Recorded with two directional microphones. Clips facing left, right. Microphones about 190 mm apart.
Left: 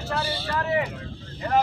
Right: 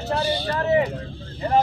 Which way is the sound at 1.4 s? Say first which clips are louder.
Right 3 dB; 30° right (ahead or behind).